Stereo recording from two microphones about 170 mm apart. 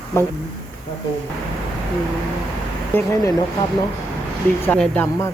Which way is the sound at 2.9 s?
15° left (ahead or behind).